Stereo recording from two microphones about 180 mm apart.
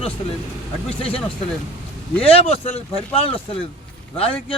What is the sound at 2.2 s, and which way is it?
Speech, 35° left (ahead or behind).